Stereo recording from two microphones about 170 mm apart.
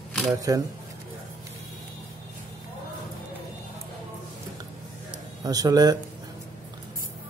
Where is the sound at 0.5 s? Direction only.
20° right (ahead or behind).